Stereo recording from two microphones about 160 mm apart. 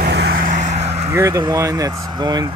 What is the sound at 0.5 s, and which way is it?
Vehicle, 45° right (ahead or behind).